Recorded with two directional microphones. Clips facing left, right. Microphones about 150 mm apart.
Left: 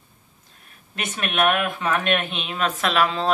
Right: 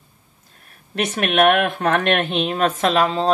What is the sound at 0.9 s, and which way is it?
Speech, 70° right (ahead or behind).